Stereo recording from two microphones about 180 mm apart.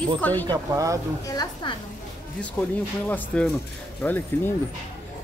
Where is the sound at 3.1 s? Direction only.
5° left (ahead or behind).